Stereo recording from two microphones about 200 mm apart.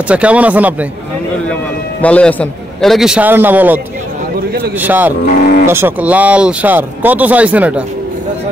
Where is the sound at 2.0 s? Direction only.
5° left (ahead or behind).